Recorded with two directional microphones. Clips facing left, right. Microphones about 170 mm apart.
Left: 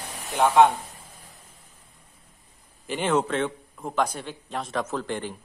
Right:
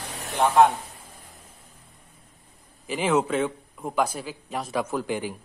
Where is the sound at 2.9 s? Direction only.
5° right (ahead or behind).